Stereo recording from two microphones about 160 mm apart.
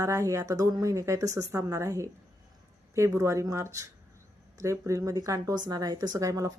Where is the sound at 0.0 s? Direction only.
20° right (ahead or behind).